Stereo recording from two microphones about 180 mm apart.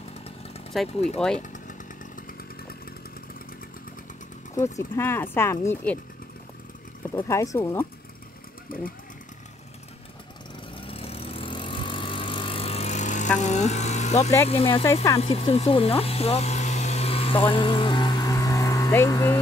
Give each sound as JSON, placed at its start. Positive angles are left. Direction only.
{"t": 0.7, "sound": "speech", "side_deg": 0}
{"t": 1.4, "sound": "chainsaw", "side_deg": 45}
{"t": 4.6, "sound": "speech", "side_deg": 15}
{"t": 7.2, "sound": "speech", "side_deg": 15}
{"t": 8.7, "sound": "speech", "side_deg": 50}
{"t": 10.8, "sound": "vehicle", "side_deg": 30}
{"t": 13.4, "sound": "speech", "side_deg": 40}
{"t": 15.1, "sound": "vehicle", "side_deg": 35}